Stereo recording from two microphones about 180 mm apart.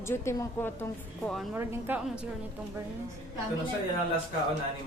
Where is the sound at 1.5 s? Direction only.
15° right (ahead or behind).